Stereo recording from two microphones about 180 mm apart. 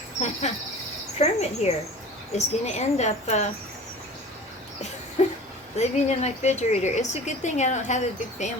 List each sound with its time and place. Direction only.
0.4 s a woman's voice: 40° left (ahead or behind)
5.7 s a woman's voice: 40° left (ahead or behind)